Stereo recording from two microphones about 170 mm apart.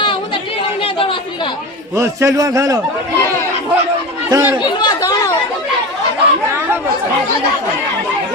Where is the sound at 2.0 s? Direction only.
15° right (ahead or behind).